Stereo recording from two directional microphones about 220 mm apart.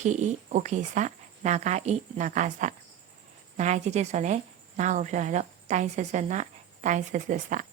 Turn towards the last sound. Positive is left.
turn(degrees=-35)  # may be behind; listen again after turning